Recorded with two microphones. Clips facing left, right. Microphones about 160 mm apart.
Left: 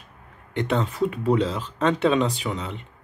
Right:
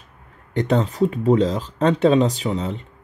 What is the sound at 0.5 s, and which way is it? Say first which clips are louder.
Speech: right 4 dB; 40° right (ahead or behind).